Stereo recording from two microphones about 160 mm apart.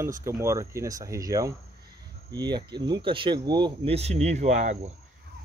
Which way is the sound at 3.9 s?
40° right (ahead or behind).